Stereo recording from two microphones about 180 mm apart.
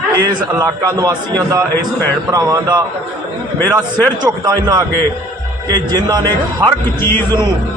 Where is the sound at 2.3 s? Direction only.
20° right (ahead or behind).